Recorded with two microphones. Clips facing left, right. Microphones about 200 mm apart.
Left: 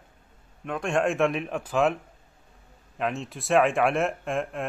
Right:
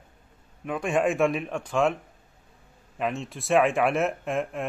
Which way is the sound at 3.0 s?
Centre (ahead or behind).